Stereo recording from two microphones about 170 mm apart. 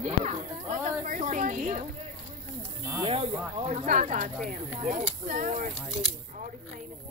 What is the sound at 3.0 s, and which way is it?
Speech, 35° right (ahead or behind).